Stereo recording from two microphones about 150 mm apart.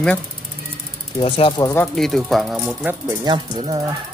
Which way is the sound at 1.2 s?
40° left (ahead or behind).